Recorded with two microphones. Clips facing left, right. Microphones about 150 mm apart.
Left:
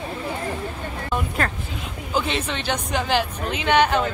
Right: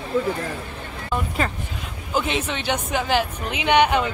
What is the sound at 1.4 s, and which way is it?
Speech, centre (ahead or behind).